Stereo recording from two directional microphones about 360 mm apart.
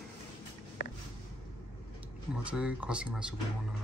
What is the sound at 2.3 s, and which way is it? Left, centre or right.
Speech, centre.